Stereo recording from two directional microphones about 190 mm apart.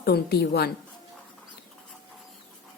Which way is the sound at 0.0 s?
55° left (ahead or behind).